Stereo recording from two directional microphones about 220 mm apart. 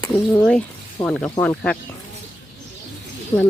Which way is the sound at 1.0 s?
5° left (ahead or behind).